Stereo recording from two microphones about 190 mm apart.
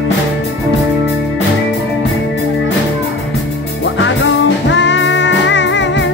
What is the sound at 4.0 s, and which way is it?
Music, 75° left (ahead or behind).